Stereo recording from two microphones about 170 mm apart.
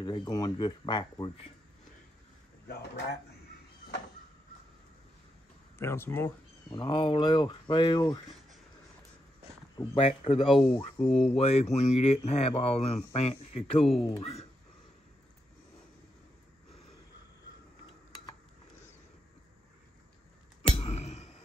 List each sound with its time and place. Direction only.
0.0 s speech: 25° left (ahead or behind)
2.7 s speech: 75° left (ahead or behind)
5.8 s speech: 15° left (ahead or behind)
6.7 s speech: 25° left (ahead or behind)
9.8 s speech: 35° left (ahead or behind)
20.6 s a sound: 35° left (ahead or behind)